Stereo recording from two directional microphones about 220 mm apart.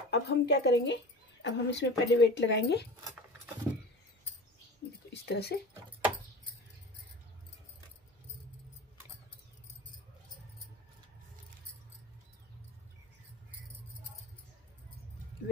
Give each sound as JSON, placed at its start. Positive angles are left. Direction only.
{"t": 0.1, "sound": "speech", "side_deg": 50}
{"t": 5.2, "sound": "speech", "side_deg": 45}